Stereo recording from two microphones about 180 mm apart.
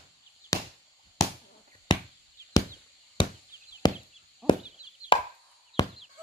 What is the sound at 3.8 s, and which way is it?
Chop, 25° left (ahead or behind).